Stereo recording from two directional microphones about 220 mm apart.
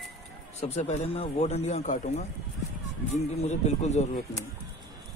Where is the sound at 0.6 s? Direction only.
30° left (ahead or behind).